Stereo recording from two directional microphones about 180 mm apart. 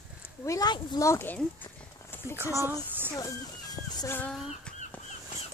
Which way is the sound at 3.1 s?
20° left (ahead or behind).